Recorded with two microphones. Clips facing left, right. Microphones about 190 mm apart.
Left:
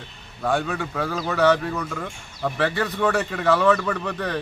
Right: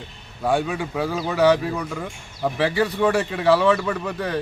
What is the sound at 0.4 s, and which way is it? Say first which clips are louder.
Speech: right 2 dB; 10° right (ahead or behind).